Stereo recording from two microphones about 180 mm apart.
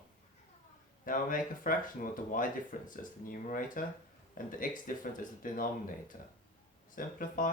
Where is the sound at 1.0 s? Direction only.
50° left (ahead or behind).